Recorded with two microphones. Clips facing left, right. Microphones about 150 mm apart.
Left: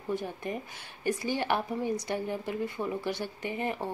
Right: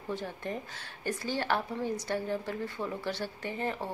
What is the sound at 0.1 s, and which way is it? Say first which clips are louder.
Speech: left 3 dB; 15° left (ahead or behind).